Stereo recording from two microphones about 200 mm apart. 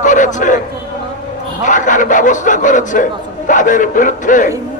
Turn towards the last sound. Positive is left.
turn(degrees=40)  # may be behind; listen again after turning